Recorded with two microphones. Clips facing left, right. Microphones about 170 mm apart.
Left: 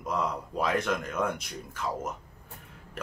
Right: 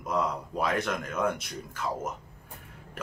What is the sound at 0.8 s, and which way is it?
Speech, centre (ahead or behind).